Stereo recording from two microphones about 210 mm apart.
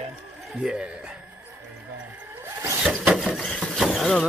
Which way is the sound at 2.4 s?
15° right (ahead or behind).